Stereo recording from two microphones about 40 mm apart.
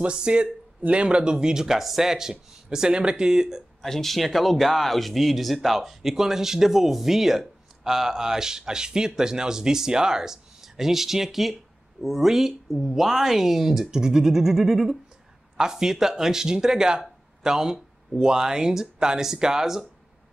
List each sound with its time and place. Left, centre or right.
0.0 s speech: right
3.8 s speech: centre